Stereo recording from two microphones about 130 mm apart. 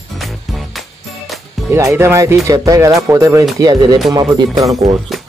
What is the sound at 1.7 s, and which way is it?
Speech, 20° right (ahead or behind).